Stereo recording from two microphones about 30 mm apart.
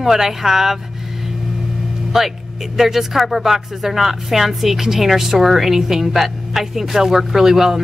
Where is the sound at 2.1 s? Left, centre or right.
Centre.